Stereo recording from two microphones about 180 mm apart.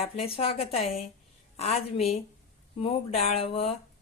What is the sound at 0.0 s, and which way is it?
Speech, 30° left (ahead or behind).